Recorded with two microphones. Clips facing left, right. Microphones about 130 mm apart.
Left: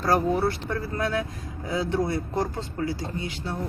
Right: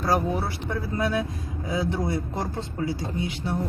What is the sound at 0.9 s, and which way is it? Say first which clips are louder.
Speech: right 2 dB; 20° right (ahead or behind).